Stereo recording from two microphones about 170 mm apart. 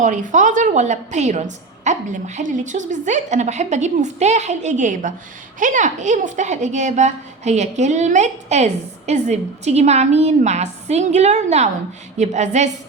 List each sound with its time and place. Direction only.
0.0 s a woman's voice: 45° right (ahead or behind)